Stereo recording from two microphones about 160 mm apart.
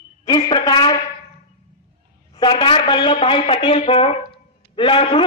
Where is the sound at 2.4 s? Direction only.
30° left (ahead or behind).